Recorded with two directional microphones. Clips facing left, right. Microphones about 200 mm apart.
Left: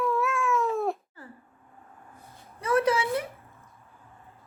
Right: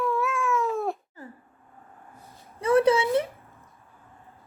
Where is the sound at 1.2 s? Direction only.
20° right (ahead or behind).